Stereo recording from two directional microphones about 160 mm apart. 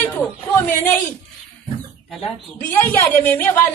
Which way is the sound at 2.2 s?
10° left (ahead or behind).